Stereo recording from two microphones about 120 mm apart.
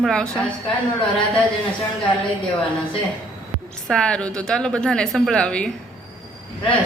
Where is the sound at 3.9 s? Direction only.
5° left (ahead or behind).